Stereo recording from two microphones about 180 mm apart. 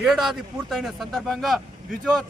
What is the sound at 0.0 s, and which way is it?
Speech, centre (ahead or behind).